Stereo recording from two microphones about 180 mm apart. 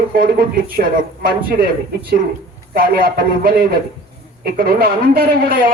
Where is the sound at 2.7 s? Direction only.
55° right (ahead or behind).